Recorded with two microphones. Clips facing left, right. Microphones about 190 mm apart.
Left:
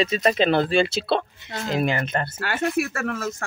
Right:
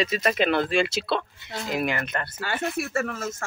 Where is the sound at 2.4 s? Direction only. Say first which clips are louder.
Left 4 dB; 60° left (ahead or behind).